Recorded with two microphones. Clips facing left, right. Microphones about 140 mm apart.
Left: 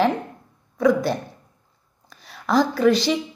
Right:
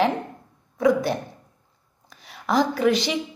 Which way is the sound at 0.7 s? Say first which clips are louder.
Left 1 dB; 20° right (ahead or behind).